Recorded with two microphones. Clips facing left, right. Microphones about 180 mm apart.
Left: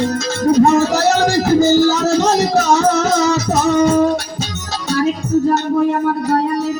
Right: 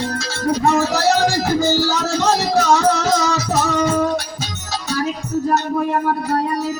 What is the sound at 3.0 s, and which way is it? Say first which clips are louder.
Music: left 4 dB; 45° left (ahead or behind).